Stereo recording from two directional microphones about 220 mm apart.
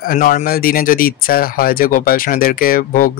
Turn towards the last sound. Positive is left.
turn(degrees=40)  # may be behind; listen again after turning